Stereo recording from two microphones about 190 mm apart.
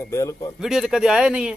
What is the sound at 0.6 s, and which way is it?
Speech, centre (ahead or behind).